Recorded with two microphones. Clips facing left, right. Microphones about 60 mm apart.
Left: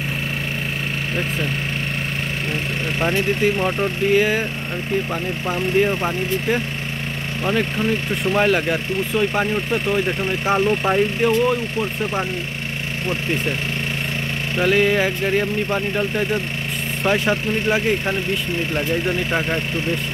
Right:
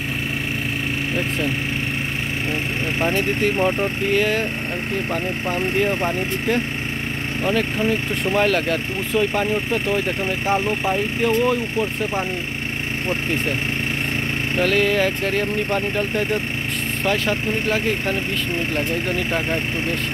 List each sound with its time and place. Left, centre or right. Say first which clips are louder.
3.1 s speech: left 3 dB; centre
10.4 s speech: left 3 dB; left
11.2 s speech: left 1 dB; centre
14.6 s speech: left 2 dB; centre